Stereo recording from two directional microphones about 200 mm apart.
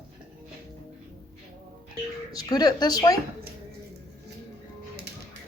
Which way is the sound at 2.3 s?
20° left (ahead or behind).